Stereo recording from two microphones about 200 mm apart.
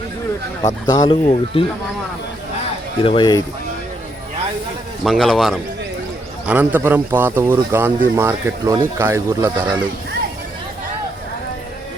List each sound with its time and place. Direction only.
0.9 s speech: 25° left (ahead or behind)
3.0 s speech: 25° left (ahead or behind)
5.0 s a man's voice: centre (ahead or behind)